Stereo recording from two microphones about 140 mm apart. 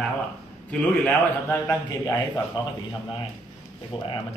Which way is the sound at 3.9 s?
40° left (ahead or behind).